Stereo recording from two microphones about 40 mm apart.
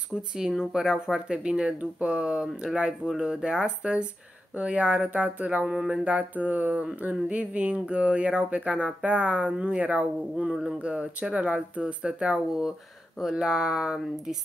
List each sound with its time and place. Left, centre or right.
0.1 s speech: centre
4.6 s a sound: right
10.6 s speech: right
13.2 s speech: centre